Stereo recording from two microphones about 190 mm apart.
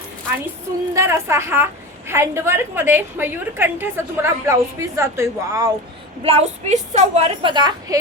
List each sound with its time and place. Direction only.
0.9 s a woman's voice: 15° right (ahead or behind)
6.2 s a woman's voice: 35° right (ahead or behind)